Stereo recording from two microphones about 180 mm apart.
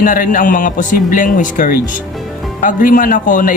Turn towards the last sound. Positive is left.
turn(degrees=45)  # may be behind; listen again after turning